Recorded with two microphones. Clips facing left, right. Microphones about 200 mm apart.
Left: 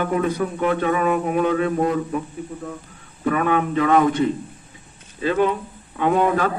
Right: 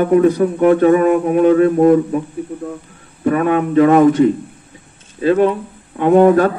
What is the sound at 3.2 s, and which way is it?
Speech, 40° right (ahead or behind).